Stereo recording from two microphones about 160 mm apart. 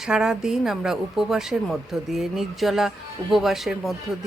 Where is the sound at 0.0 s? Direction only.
5° right (ahead or behind).